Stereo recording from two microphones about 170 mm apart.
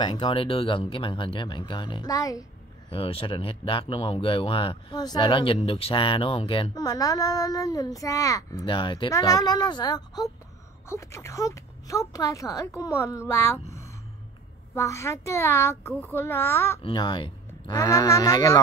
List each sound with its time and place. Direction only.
0.0 s speech: 30° left (ahead or behind)
2.9 s speech: 35° left (ahead or behind)
8.6 s a woman's voice: 30° left (ahead or behind)
16.8 s speech: 25° left (ahead or behind)